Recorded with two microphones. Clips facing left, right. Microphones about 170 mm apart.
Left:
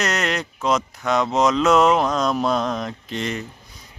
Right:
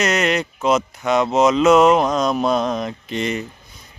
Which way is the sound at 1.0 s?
5° right (ahead or behind).